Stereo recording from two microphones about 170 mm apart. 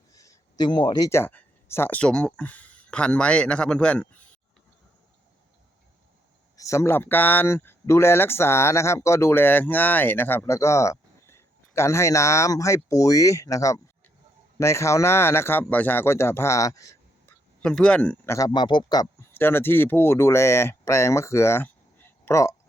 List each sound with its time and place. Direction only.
0.1 s speech: 20° left (ahead or behind)
6.6 s speech: 15° left (ahead or behind)
17.6 s speech: 5° left (ahead or behind); by 19.0 s 25° left (ahead or behind)
19.3 s speech: 10° left (ahead or behind)